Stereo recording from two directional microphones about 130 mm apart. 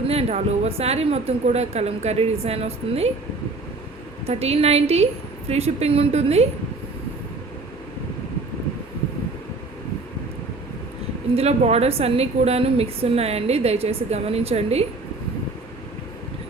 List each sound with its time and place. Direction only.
0.1 s speech: 55° right (ahead or behind)
4.3 s a woman's voice: 55° right (ahead or behind)
11.3 s a woman's voice: 55° right (ahead or behind)